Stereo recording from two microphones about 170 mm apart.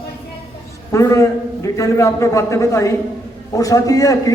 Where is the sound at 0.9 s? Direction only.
20° left (ahead or behind).